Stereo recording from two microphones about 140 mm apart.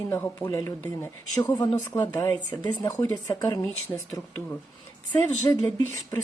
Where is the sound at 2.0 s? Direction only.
20° left (ahead or behind).